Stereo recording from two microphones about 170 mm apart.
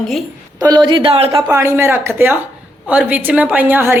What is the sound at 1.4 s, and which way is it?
Speech, 15° right (ahead or behind).